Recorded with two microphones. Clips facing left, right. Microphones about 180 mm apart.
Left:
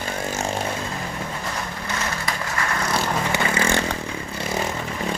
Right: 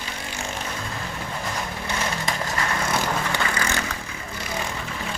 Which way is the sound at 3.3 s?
25° left (ahead or behind).